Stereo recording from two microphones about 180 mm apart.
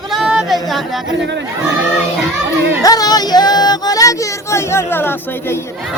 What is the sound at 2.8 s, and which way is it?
Music, 20° left (ahead or behind).